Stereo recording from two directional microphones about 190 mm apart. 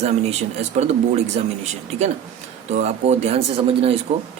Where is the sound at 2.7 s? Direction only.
35° right (ahead or behind).